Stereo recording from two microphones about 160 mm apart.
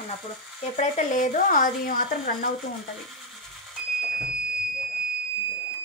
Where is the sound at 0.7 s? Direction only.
50° left (ahead or behind); by 2.5 s 65° left (ahead or behind).